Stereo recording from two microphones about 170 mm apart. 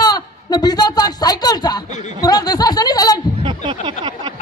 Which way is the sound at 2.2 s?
25° left (ahead or behind).